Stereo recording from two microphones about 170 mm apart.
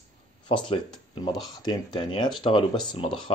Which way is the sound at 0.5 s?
30° left (ahead or behind).